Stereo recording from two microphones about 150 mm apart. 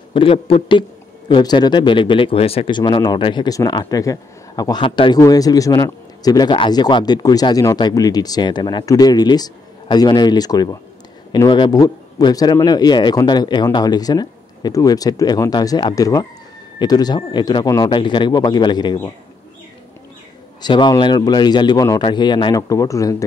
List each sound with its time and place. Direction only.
0.1 s a man's voice: 35° left (ahead or behind)
20.6 s a man's voice: 30° left (ahead or behind)